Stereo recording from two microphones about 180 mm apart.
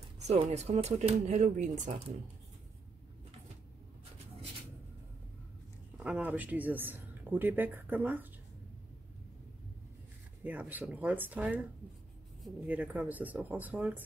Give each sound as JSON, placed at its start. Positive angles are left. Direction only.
{"t": 0.3, "sound": "speech", "side_deg": -35}
{"t": 5.9, "sound": "speech", "side_deg": -5}
{"t": 10.4, "sound": "speech", "side_deg": -10}
{"t": 12.6, "sound": "speech", "side_deg": -10}